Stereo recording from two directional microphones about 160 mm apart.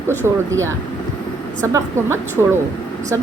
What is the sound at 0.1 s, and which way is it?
Speech, 15° right (ahead or behind).